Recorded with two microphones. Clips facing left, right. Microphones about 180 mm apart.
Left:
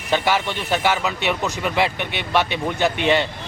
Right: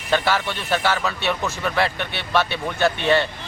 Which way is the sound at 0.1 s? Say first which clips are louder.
Left 1 dB; 15° left (ahead or behind).